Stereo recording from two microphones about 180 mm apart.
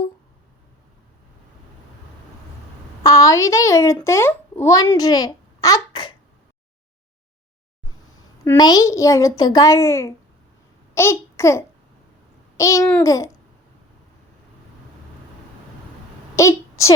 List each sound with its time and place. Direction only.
3.0 s a child's voice: 20° left (ahead or behind)
8.5 s a child's voice: 20° left (ahead or behind)
16.3 s a sound: 15° left (ahead or behind)